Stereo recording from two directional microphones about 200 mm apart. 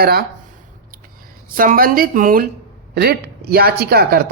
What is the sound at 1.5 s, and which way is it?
Speech, 45° right (ahead or behind).